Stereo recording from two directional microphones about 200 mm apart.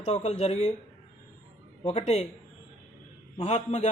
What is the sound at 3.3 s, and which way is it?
Speech, 35° left (ahead or behind).